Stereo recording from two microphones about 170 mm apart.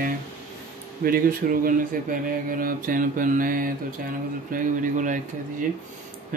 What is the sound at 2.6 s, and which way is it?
Speech, 55° right (ahead or behind).